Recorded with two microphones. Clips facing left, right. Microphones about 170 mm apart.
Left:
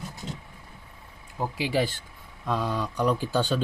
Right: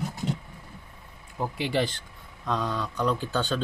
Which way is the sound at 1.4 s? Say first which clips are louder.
Left 1 dB; 5° left (ahead or behind).